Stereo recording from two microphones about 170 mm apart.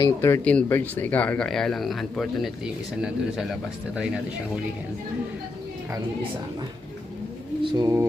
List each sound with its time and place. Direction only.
0.0 s speech: 15° left (ahead or behind); by 4.2 s 5° right (ahead or behind)
7.6 s speech: 20° right (ahead or behind)